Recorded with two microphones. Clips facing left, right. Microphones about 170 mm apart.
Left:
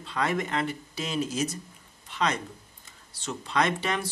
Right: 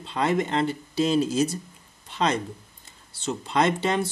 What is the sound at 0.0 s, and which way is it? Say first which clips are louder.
A man's voice: right 4 dB; 25° right (ahead or behind).